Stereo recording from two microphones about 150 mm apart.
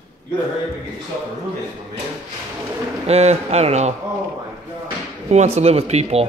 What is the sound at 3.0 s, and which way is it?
Speech, 45° right (ahead or behind).